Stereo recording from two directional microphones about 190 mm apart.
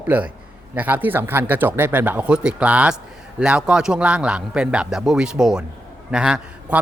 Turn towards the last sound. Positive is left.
turn(degrees=-5)  # may be behind; listen again after turning